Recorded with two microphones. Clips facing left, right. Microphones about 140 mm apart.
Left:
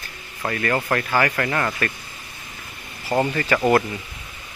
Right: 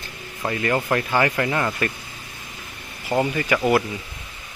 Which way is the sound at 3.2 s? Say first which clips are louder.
Even; 15° right (ahead or behind).